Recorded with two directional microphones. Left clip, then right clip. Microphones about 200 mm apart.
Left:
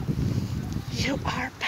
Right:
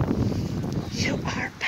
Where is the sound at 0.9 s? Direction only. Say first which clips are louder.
Left 1 dB; 10° left (ahead or behind).